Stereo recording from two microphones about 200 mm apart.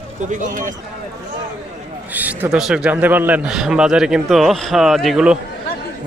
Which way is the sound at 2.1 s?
10° right (ahead or behind).